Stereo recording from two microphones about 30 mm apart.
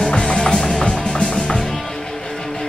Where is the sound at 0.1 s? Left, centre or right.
Left.